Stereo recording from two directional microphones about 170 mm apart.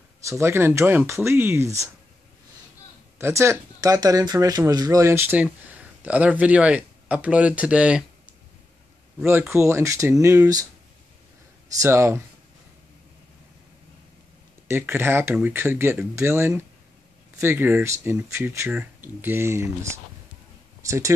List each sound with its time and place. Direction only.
0.3 s speech: 15° right (ahead or behind)
3.2 s speech: 15° right (ahead or behind)
11.8 s speech: 15° right (ahead or behind)
14.7 s speech: 15° right (ahead or behind)